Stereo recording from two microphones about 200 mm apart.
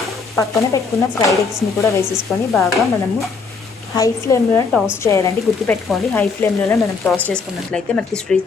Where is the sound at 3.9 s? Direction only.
15° left (ahead or behind).